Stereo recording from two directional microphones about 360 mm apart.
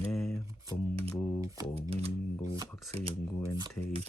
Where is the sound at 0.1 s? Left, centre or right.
Centre.